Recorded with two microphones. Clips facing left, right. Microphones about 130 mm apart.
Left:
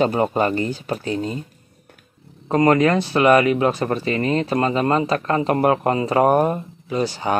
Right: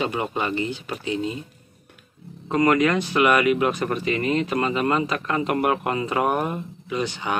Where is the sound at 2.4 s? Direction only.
35° left (ahead or behind).